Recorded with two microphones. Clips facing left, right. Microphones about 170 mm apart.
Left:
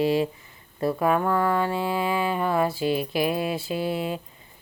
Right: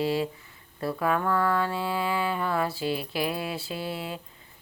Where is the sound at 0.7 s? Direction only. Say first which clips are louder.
Left 4 dB; 20° left (ahead or behind).